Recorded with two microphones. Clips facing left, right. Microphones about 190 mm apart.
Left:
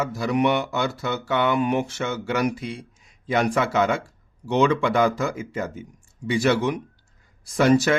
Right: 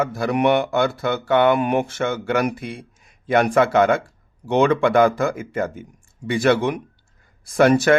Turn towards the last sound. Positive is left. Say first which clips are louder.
# right 3 dB
turn(degrees=-55)  # may be behind; listen again after turning